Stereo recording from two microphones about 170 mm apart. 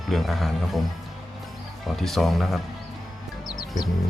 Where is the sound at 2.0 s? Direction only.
Centre (ahead or behind).